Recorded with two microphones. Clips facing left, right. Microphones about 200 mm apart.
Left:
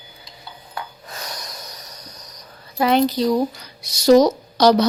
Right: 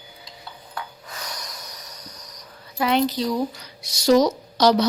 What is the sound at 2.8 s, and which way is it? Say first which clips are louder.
Speech: left 4 dB; 40° left (ahead or behind).